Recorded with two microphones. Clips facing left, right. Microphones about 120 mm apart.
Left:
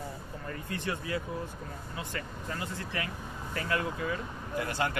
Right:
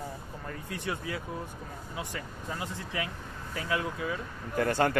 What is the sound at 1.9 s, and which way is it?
Speech, 15° right (ahead or behind).